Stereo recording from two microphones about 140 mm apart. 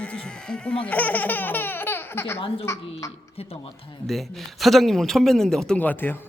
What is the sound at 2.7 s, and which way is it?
Speech, 20° left (ahead or behind).